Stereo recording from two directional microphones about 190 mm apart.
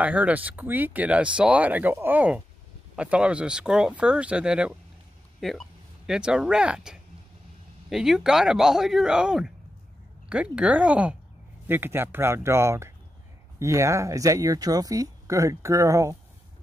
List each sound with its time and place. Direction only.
0.0 s speech: 10° right (ahead or behind)